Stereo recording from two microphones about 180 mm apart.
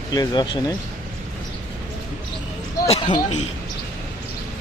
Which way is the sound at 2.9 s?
25° left (ahead or behind).